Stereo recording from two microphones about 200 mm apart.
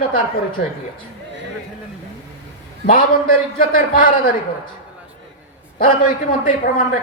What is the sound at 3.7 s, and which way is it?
Speech, 40° left (ahead or behind).